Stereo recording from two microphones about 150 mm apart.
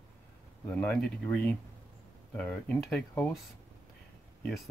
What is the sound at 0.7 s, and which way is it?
Speech, 10° left (ahead or behind).